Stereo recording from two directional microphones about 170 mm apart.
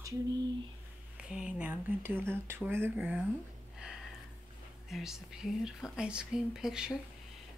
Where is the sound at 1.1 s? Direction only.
5° right (ahead or behind).